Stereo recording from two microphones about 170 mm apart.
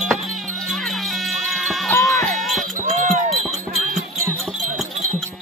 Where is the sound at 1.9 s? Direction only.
15° left (ahead or behind).